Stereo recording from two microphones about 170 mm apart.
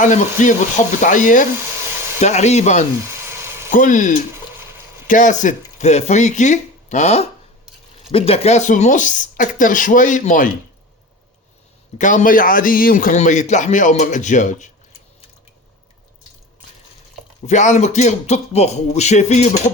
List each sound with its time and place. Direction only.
0.0 s a man's voice: 45° left (ahead or behind)
3.2 s a sound: 15° right (ahead or behind)
3.7 s a man's voice: 50° left (ahead or behind)
11.9 s a man's voice: 50° left (ahead or behind)
17.4 s speech: 45° left (ahead or behind)